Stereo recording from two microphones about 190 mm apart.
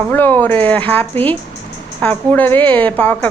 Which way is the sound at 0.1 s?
10° left (ahead or behind).